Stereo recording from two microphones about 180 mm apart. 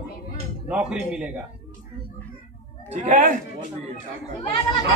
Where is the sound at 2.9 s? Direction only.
40° right (ahead or behind).